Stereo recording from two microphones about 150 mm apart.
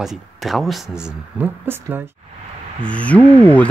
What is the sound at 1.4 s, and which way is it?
Speech, 10° right (ahead or behind).